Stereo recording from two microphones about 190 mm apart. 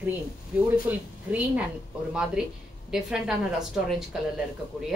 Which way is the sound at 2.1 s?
5° right (ahead or behind).